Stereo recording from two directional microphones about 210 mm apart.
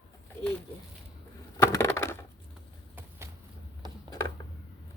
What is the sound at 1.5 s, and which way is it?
Crushing, 15° left (ahead or behind).